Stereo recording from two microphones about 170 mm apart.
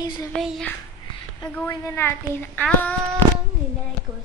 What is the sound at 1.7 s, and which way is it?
A child's voice, 15° left (ahead or behind).